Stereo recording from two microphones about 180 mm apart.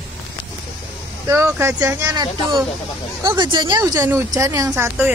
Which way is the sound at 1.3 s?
15° right (ahead or behind).